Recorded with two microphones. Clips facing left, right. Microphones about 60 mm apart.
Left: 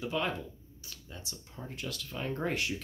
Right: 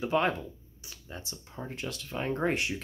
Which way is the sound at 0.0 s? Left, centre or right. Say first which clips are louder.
Right 6 dB; right.